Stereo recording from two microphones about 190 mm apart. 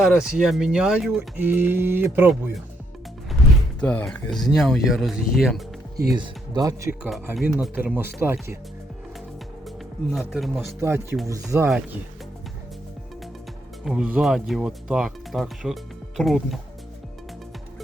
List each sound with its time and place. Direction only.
0.0 s speech: 5° right (ahead or behind)
3.8 s speech: 10° left (ahead or behind)
6.1 s speech: 20° right (ahead or behind)
7.6 s speech: 5° right (ahead or behind)
10.2 s speech: centre (ahead or behind)
10.8 s speech: 15° right (ahead or behind)
13.8 s speech: 5° right (ahead or behind)